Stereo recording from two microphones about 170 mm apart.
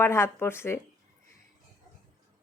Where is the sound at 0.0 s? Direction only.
15° left (ahead or behind).